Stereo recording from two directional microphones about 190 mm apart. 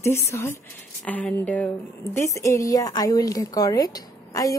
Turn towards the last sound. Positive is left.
turn(degrees=20)  # may be behind; listen again after turning